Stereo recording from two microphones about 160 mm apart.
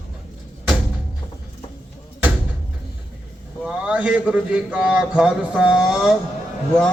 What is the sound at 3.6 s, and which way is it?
Music, 5° right (ahead or behind).